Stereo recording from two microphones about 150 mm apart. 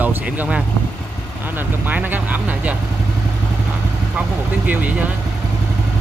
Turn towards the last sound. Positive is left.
turn(degrees=-10)  # may be behind; listen again after turning